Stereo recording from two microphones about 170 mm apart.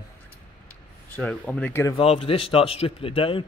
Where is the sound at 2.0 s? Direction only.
35° left (ahead or behind).